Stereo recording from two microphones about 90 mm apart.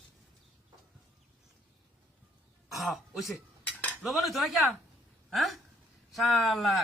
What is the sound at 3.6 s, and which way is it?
Cutlery, 15° left (ahead or behind).